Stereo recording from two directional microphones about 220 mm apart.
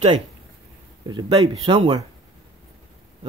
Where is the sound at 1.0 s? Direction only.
15° right (ahead or behind).